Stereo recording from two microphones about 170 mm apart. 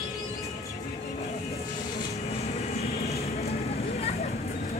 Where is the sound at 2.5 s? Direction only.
40° left (ahead or behind).